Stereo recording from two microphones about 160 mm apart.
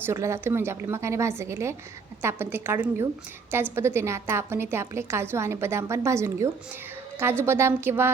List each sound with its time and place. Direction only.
0.0 s a woman's voice: 15° right (ahead or behind)